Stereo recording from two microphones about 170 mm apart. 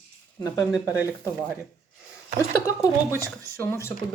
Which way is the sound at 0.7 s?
10° right (ahead or behind).